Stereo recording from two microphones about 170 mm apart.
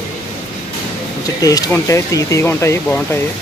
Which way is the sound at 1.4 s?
20° left (ahead or behind).